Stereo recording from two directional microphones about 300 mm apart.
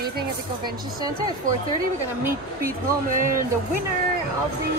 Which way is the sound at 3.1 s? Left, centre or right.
Right.